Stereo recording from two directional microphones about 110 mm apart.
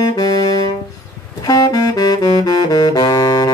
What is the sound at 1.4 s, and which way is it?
Saxophone, 35° left (ahead or behind).